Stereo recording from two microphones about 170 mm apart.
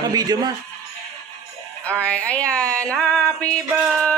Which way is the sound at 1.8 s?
5° left (ahead or behind).